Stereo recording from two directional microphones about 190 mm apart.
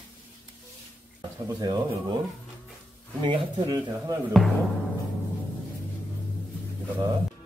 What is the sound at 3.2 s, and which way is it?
A man's voice, 25° right (ahead or behind).